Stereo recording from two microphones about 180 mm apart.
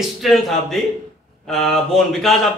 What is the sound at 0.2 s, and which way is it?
Speech, centre (ahead or behind).